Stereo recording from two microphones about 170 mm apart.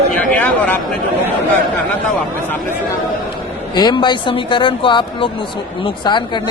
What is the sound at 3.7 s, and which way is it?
Speech, 25° left (ahead or behind).